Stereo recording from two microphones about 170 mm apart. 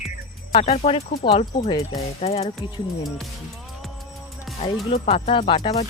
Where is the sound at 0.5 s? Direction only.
35° left (ahead or behind).